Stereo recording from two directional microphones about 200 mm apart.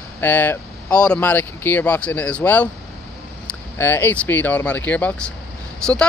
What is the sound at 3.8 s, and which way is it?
Speech, 10° left (ahead or behind).